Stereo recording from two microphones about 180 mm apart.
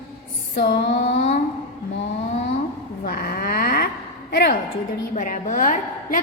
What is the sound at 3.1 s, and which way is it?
Speech, 55° left (ahead or behind).